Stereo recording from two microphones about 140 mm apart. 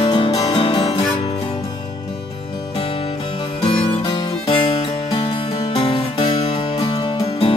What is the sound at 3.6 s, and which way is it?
Music, 40° left (ahead or behind).